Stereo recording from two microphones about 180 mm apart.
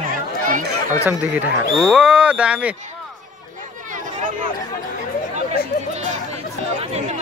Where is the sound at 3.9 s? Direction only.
45° right (ahead or behind).